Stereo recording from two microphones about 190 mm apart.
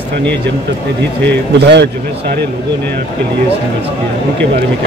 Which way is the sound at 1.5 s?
60° right (ahead or behind).